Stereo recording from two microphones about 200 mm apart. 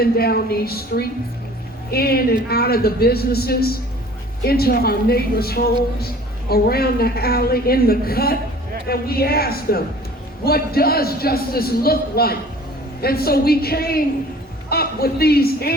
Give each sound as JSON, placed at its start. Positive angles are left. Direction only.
{"t": 0.0, "sound": "a man's voice", "side_deg": 50}